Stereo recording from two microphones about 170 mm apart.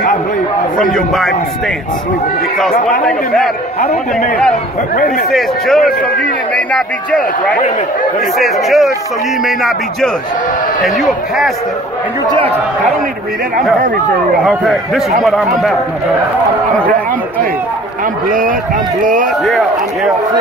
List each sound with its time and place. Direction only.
0.7 s speech: 5° left (ahead or behind)
5.3 s a man's voice: centre (ahead or behind)
12.3 s speech: 35° right (ahead or behind)
14.4 s speech: centre (ahead or behind)